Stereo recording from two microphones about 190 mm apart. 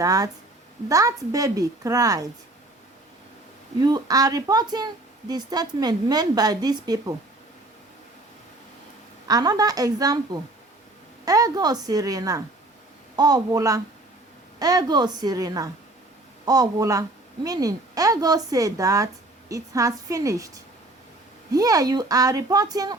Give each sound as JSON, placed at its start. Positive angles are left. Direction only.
{"t": 0.0, "sound": "a woman's voice", "side_deg": -20}
{"t": 3.8, "sound": "a woman's voice", "side_deg": -20}
{"t": 9.2, "sound": "a woman's voice", "side_deg": -20}
{"t": 21.5, "sound": "a woman's voice", "side_deg": -20}